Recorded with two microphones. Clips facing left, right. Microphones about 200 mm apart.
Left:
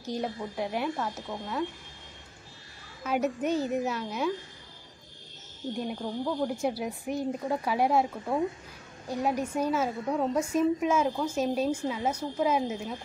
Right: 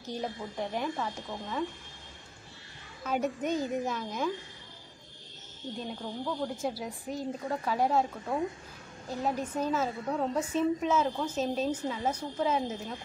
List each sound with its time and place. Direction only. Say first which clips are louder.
0.0 s a woman's voice: left 3 dB; 10° left (ahead or behind)
3.0 s a woman's voice: left 3 dB; 5° left (ahead or behind)
5.8 s a woman's voice: left 4 dB; 15° left (ahead or behind)